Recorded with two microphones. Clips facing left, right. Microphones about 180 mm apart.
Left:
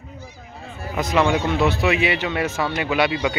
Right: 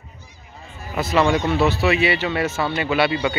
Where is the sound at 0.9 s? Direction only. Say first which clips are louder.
Right 1 dB; 5° right (ahead or behind).